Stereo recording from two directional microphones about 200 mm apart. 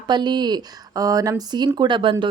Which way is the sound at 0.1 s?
20° right (ahead or behind).